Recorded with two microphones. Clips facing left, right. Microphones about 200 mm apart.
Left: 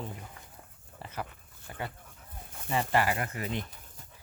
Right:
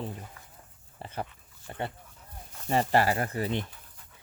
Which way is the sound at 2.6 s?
35° right (ahead or behind).